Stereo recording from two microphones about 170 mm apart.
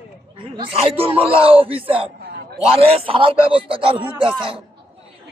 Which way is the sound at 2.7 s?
35° right (ahead or behind).